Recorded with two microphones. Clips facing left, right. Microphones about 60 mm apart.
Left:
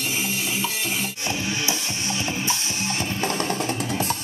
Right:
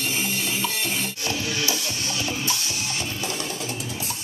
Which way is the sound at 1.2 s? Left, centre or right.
Left.